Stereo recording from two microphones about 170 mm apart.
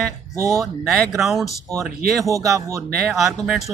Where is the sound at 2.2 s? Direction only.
20° right (ahead or behind).